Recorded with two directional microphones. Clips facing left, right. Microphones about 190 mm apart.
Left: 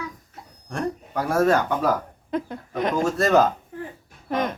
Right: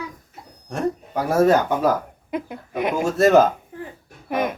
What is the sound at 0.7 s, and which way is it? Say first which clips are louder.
Speech: right 3 dB; 20° right (ahead or behind).